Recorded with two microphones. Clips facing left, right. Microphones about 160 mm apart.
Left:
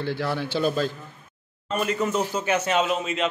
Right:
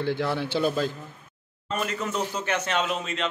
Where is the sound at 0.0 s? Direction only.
20° right (ahead or behind).